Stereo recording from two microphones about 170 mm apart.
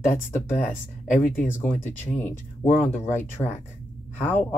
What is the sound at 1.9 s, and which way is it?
Speech, 10° left (ahead or behind).